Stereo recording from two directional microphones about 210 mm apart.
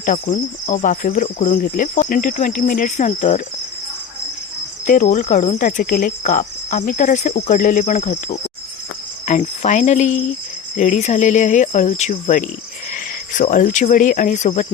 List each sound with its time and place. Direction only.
0.0 s cricket: 35° left (ahead or behind)
4.9 s cricket: 35° left (ahead or behind)
12.9 s speech: 40° left (ahead or behind)